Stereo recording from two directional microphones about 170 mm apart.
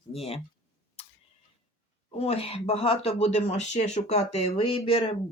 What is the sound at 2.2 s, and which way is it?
Speech, 35° left (ahead or behind).